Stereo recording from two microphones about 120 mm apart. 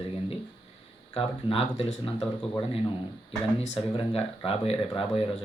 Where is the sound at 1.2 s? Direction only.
55° left (ahead or behind).